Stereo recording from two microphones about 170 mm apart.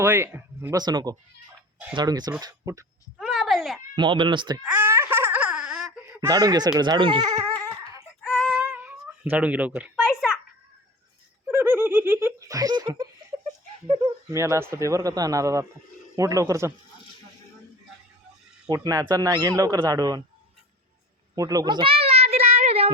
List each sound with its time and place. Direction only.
0.0 s speech: 15° right (ahead or behind)
3.2 s a sound: centre (ahead or behind)
3.9 s speech: 30° right (ahead or behind)
4.6 s wail: 10° right (ahead or behind)
6.2 s speech: 20° right (ahead or behind)
8.2 s female singing: 10° left (ahead or behind)
8.5 s female singing: 10° right (ahead or behind)
9.3 s speech: 10° right (ahead or behind)
11.4 s giggle: 10° right (ahead or behind)
14.0 s speech: 20° right (ahead or behind)
18.7 s speech: 20° right (ahead or behind)
21.3 s a sound: 20° right (ahead or behind); by 22.9 s 35° right (ahead or behind)